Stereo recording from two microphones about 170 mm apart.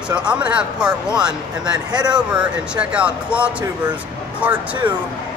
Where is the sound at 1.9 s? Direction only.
25° right (ahead or behind).